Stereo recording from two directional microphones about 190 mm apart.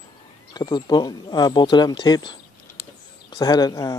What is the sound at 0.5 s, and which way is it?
Speech, 20° left (ahead or behind).